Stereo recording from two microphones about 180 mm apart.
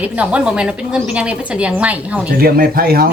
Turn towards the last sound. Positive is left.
turn(degrees=-55)  # may be behind; listen again after turning